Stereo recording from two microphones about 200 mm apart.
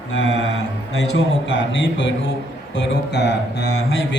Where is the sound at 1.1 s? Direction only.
65° left (ahead or behind).